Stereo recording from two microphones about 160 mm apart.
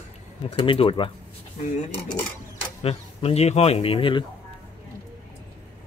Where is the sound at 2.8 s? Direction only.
40° left (ahead or behind).